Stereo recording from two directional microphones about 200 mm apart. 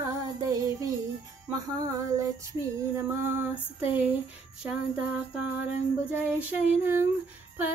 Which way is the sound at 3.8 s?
10° right (ahead or behind).